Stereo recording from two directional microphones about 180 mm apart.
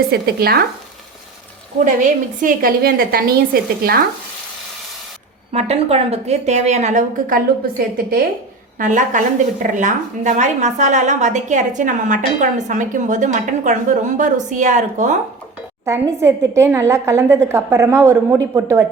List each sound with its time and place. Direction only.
0.1 s a woman's voice: 60° right (ahead or behind)
1.8 s a woman's voice: 45° right (ahead or behind)
5.5 s a woman's voice: 35° right (ahead or behind); by 8.3 s 55° right (ahead or behind)
8.8 s a woman's voice: 45° right (ahead or behind)
16.6 s a woman's voice: 15° right (ahead or behind)